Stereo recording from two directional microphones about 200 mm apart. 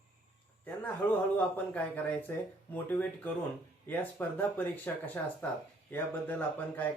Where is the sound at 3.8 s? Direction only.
10° left (ahead or behind).